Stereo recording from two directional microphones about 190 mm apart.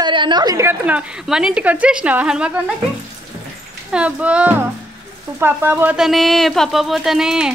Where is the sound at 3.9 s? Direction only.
5° right (ahead or behind).